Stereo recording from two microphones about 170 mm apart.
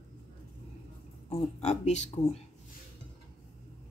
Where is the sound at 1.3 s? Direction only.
40° left (ahead or behind).